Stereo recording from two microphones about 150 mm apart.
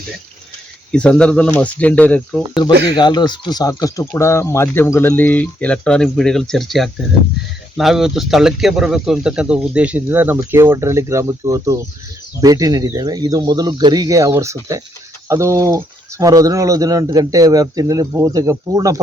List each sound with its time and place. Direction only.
0.9 s speech: 5° left (ahead or behind)
2.8 s speech: 30° left (ahead or behind); by 18.9 s 20° right (ahead or behind)